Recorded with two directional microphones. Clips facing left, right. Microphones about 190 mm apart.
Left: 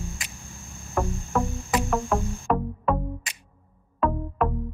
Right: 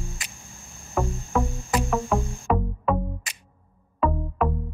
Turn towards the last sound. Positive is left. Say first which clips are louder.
# even
turn(degrees=0)  # may be behind; listen again after turning